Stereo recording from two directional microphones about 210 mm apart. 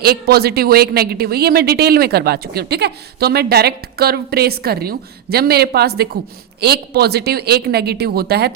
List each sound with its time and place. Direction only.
0.0 s a woman's voice: 50° right (ahead or behind)